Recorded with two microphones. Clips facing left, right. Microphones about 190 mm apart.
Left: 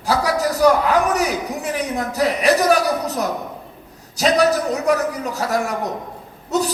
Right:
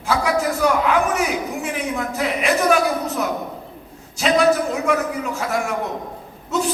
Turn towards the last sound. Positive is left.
turn(degrees=40)  # may be behind; listen again after turning